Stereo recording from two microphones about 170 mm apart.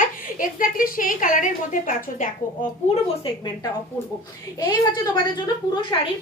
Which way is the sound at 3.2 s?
30° left (ahead or behind).